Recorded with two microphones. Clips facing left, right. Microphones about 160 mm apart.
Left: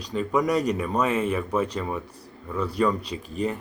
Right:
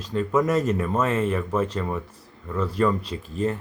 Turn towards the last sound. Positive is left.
turn(degrees=15)  # may be behind; listen again after turning